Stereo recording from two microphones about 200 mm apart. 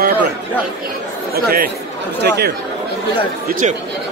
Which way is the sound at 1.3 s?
50° right (ahead or behind).